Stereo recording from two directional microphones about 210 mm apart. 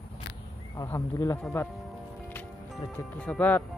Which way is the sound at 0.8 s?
15° left (ahead or behind).